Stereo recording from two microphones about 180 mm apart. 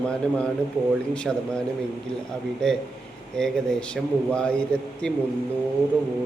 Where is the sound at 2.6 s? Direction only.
5° left (ahead or behind).